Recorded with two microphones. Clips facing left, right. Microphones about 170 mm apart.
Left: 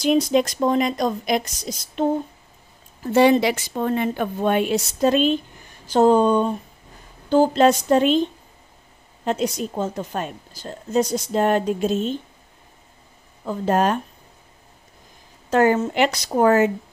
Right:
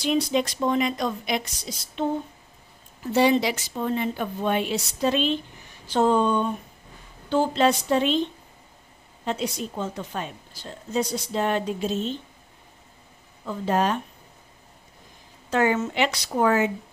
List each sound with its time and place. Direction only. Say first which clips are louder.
0.0 s a woman's voice: left 5 dB; 45° left (ahead or behind)
5.9 s a sound: left 5 dB; 40° left (ahead or behind)
7.2 s a woman's voice: left 5 dB; 40° left (ahead or behind)
13.5 s a woman's voice: left 4 dB; 50° left (ahead or behind)
15.5 s a woman's voice: left 5 dB; 45° left (ahead or behind)